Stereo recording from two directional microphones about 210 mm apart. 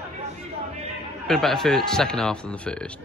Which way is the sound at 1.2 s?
Centre (ahead or behind).